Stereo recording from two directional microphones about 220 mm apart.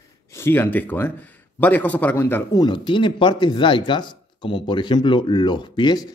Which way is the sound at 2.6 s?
20° left (ahead or behind).